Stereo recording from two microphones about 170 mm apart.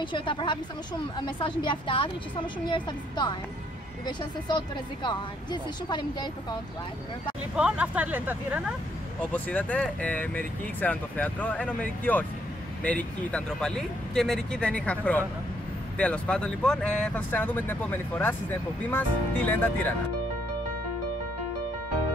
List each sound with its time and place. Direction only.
0.0 s speech: 30° left (ahead or behind)
7.5 s speech: 5° right (ahead or behind)
9.3 s speech: 10° left (ahead or behind)